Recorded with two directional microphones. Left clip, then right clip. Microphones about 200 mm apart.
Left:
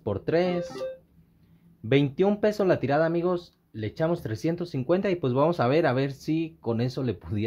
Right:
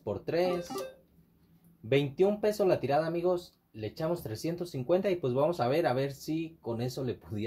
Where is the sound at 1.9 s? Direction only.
40° left (ahead or behind).